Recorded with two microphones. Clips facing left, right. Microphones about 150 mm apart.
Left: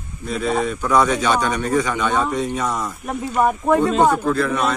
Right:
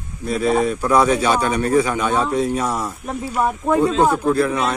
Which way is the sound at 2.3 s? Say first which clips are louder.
Right 3 dB; 35° right (ahead or behind).